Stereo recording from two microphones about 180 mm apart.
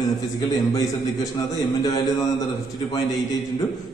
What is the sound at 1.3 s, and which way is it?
Speech, 20° left (ahead or behind).